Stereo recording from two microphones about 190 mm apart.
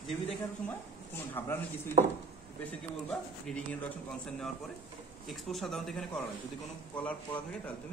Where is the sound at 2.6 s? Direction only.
5° left (ahead or behind).